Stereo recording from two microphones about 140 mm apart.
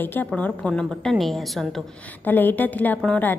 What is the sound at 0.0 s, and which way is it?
A woman's voice, 15° left (ahead or behind).